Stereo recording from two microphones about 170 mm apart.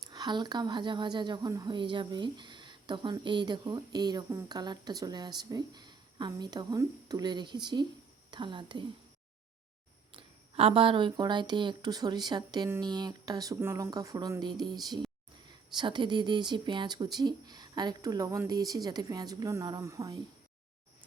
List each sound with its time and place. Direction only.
0.0 s speech: 25° right (ahead or behind)
10.2 s speech: 30° right (ahead or behind)